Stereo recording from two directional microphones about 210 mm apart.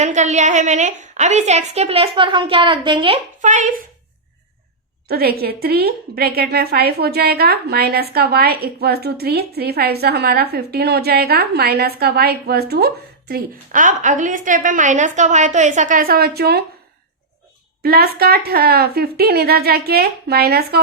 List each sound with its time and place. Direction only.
0.0 s a woman's voice: 35° right (ahead or behind)
3.4 s a woman's voice: 35° right (ahead or behind)
5.0 s a woman's voice: 50° right (ahead or behind)
17.8 s a woman's voice: 45° right (ahead or behind)